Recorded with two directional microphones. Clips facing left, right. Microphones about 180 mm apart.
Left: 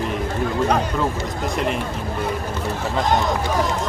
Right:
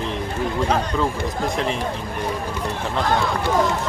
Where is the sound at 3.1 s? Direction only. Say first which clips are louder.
Left 2 dB; 20° left (ahead or behind).